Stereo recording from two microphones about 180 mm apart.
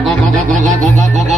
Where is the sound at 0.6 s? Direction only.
40° right (ahead or behind).